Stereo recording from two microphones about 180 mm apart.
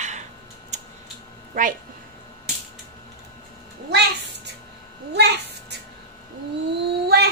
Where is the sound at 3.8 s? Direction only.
70° right (ahead or behind).